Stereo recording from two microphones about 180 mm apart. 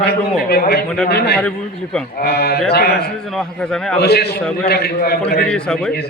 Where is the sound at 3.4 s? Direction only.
5° left (ahead or behind).